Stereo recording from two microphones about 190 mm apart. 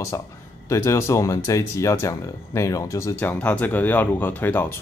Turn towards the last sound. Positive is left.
turn(degrees=10)  # may be behind; listen again after turning